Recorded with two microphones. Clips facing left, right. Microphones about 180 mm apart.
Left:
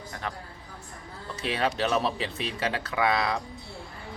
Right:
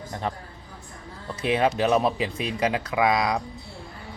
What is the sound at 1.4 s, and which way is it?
Speech, 20° right (ahead or behind).